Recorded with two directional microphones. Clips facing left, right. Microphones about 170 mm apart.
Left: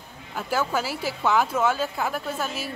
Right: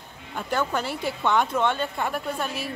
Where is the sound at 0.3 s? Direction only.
5° left (ahead or behind).